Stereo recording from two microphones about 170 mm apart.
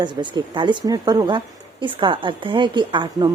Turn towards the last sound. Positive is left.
turn(degrees=-25)  # may be behind; listen again after turning